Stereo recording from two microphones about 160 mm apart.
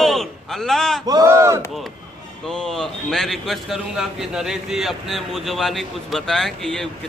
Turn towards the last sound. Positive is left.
turn(degrees=5)  # may be behind; listen again after turning